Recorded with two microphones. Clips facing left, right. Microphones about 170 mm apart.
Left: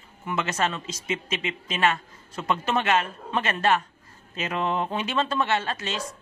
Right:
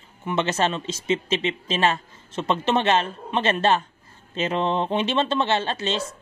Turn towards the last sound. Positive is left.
turn(degrees=-30)  # may be behind; listen again after turning